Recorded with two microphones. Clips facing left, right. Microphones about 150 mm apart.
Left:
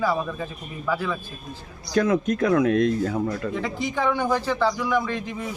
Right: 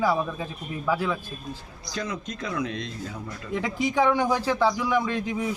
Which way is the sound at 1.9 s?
60° left (ahead or behind).